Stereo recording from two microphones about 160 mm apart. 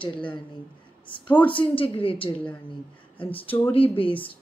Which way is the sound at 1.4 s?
30° left (ahead or behind).